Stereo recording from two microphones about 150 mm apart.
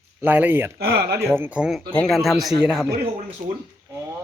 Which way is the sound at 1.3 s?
10° right (ahead or behind).